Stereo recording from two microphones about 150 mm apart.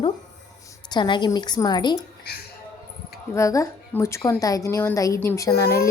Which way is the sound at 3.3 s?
20° left (ahead or behind).